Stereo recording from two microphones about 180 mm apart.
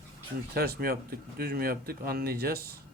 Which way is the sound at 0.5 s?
55° right (ahead or behind).